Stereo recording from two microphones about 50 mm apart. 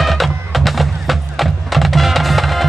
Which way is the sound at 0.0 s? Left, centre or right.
Centre.